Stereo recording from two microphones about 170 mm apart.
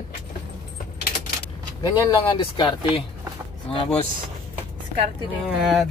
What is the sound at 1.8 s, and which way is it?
Speech, 25° left (ahead or behind).